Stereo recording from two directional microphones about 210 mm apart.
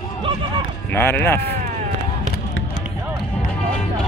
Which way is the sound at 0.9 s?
10° left (ahead or behind).